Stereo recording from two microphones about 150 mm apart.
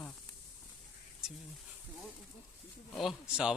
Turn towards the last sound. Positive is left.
turn(degrees=-5)  # may be behind; listen again after turning